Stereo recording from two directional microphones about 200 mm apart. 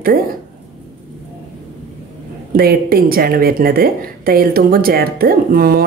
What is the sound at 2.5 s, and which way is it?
A woman's voice, 50° right (ahead or behind).